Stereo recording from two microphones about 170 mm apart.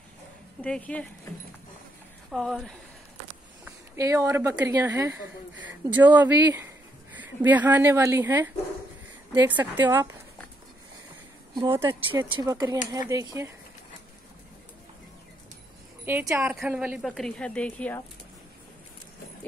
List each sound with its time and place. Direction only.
0.6 s speech: 5° left (ahead or behind)
2.3 s a woman's voice: centre (ahead or behind)
3.6 s speech: 15° right (ahead or behind)
9.5 s speech: 10° right (ahead or behind)
11.5 s speech: 20° right (ahead or behind)
16.1 s a woman's voice: 15° right (ahead or behind); by 18.0 s 10° left (ahead or behind)